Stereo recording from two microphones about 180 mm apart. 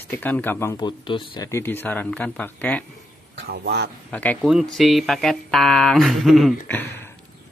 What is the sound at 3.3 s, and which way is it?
Speech, 65° right (ahead or behind).